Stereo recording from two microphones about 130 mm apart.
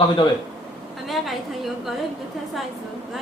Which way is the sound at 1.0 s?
Centre (ahead or behind).